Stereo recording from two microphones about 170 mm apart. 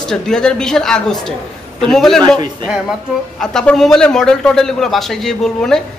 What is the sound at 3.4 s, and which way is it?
A man's voice, 5° left (ahead or behind).